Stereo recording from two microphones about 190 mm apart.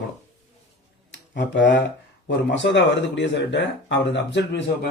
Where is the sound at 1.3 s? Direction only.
70° left (ahead or behind).